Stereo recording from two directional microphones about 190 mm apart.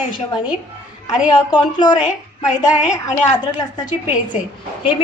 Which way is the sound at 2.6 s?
5° right (ahead or behind).